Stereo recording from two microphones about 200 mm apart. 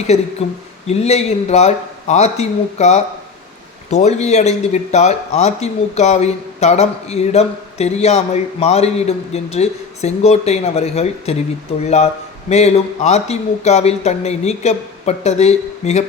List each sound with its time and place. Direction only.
0.1 s a man's voice: 35° left (ahead or behind)